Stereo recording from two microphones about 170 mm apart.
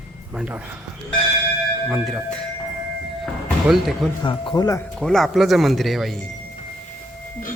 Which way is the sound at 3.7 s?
Centre (ahead or behind).